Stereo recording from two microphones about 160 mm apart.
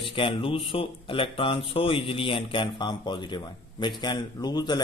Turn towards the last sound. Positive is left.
turn(degrees=25)  # may be behind; listen again after turning